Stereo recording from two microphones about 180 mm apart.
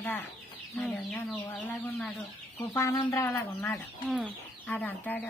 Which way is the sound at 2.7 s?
15° left (ahead or behind).